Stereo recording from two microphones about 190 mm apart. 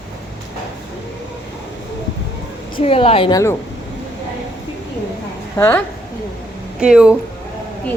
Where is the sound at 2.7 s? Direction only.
30° left (ahead or behind).